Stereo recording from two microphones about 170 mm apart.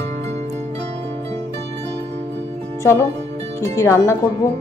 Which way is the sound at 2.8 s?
15° left (ahead or behind).